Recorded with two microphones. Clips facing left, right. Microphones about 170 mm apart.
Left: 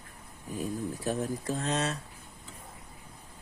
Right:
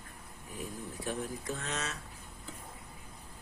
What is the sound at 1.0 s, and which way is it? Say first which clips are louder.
Speech: left 4 dB; 35° left (ahead or behind).